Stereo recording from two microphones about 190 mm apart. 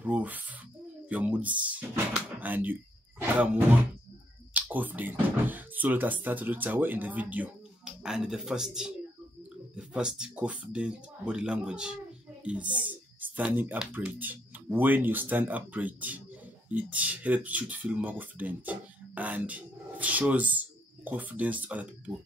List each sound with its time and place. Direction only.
0.0 s speech: 10° right (ahead or behind)